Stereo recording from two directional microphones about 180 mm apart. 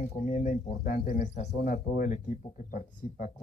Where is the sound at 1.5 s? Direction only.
55° left (ahead or behind).